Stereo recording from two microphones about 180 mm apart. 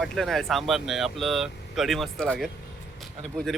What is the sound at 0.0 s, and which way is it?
Speech, centre (ahead or behind).